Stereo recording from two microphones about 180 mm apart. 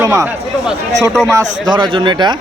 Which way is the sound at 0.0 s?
20° right (ahead or behind).